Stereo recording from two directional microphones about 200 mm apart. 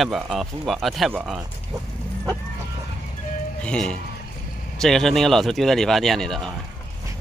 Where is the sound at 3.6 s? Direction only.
5° left (ahead or behind).